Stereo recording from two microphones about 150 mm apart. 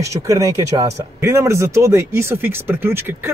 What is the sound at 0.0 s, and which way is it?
Speech, 20° right (ahead or behind).